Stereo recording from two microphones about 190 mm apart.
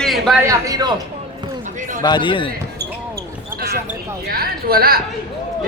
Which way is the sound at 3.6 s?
55° right (ahead or behind).